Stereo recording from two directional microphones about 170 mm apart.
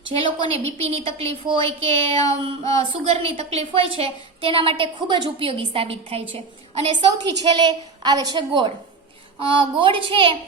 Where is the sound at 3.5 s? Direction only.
35° right (ahead or behind).